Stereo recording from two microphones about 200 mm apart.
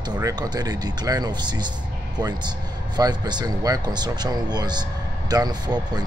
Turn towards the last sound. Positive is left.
turn(degrees=-20)  # may be behind; listen again after turning